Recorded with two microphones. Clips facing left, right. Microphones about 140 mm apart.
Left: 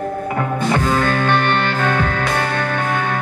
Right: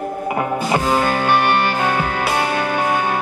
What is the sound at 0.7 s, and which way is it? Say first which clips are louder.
Music: right 1 dB; 15° right (ahead or behind).